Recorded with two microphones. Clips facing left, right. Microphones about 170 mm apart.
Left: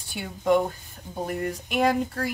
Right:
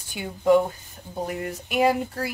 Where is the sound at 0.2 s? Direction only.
5° right (ahead or behind).